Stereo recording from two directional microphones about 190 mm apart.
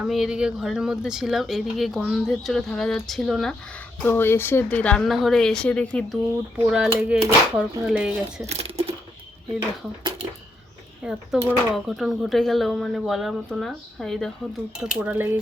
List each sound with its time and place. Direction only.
0.0 s speech: centre (ahead or behind)
4.0 s speech: 10° left (ahead or behind)
6.7 s speech: 5° right (ahead or behind)
8.4 s a sound: 30° right (ahead or behind)
11.0 s speech: 5° right (ahead or behind)